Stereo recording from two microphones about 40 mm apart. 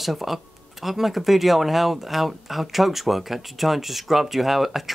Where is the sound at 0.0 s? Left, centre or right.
Centre.